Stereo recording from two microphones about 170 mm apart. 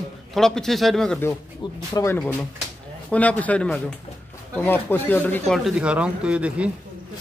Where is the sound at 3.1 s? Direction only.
10° left (ahead or behind).